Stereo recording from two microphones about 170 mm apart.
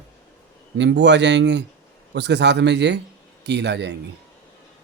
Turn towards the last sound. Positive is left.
turn(degrees=-90)